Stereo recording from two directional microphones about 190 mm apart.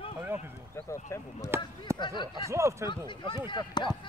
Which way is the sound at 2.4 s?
15° right (ahead or behind).